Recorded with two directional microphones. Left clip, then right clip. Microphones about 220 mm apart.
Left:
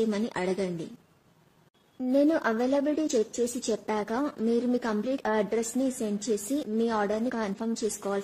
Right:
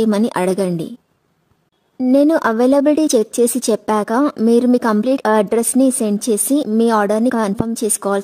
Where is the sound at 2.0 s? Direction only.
50° right (ahead or behind).